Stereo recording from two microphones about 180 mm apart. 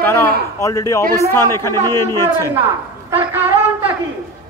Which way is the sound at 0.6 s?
15° left (ahead or behind).